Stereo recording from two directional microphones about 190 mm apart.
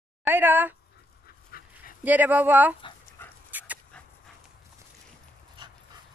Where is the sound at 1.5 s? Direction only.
50° left (ahead or behind).